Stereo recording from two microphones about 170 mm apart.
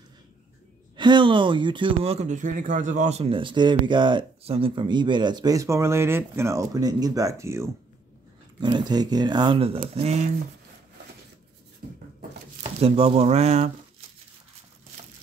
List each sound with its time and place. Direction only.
0.9 s speech: 25° right (ahead or behind)
8.5 s speech: 25° right (ahead or behind)
11.8 s a sound: 70° right (ahead or behind)
12.8 s speech: 35° right (ahead or behind)